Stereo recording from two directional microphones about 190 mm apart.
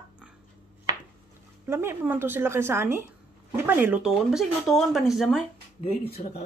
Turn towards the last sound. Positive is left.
turn(degrees=30)  # may be behind; listen again after turning